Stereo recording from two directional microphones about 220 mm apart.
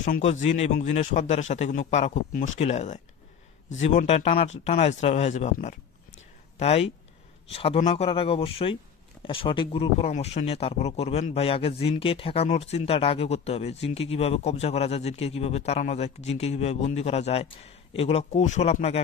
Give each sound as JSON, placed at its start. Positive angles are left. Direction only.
{"t": 0.0, "sound": "speech", "side_deg": 35}